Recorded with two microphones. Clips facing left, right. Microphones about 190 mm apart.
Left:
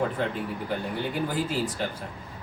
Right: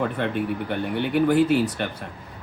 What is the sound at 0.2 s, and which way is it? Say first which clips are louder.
Speech: right 4 dB; 65° right (ahead or behind).